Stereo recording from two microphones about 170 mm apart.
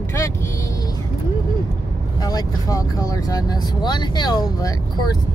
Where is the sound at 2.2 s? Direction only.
20° left (ahead or behind).